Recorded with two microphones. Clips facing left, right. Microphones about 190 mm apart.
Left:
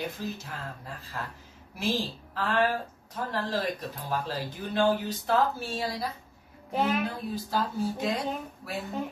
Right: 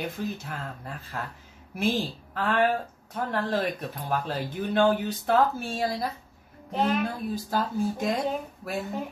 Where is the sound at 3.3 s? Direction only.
55° right (ahead or behind).